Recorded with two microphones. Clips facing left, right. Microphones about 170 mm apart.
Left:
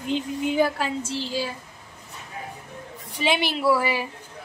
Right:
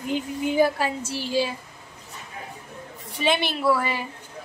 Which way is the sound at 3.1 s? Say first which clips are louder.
Even; 10° left (ahead or behind).